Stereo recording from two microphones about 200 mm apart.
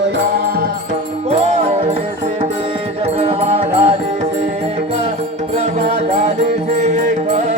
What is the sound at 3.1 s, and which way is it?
Music, 30° right (ahead or behind).